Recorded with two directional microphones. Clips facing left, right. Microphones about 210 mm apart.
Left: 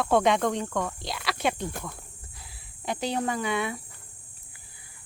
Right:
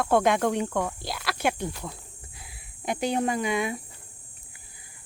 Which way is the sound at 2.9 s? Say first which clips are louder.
Right 3 dB; 15° right (ahead or behind).